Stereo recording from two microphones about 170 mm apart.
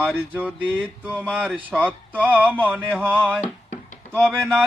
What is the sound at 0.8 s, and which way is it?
Speech, 10° right (ahead or behind).